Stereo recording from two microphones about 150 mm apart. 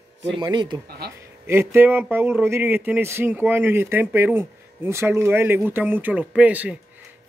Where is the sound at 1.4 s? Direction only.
15° right (ahead or behind).